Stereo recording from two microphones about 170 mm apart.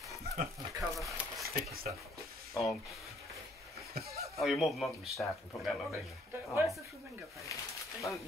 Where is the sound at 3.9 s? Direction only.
65° right (ahead or behind).